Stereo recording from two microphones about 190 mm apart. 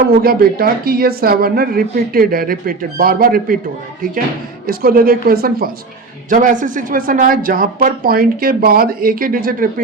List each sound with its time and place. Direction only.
0.2 s speech: 50° right (ahead or behind)
4.6 s speech: 50° right (ahead or behind)